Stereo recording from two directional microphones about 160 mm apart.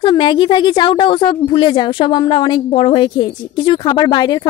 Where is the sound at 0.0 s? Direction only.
30° left (ahead or behind).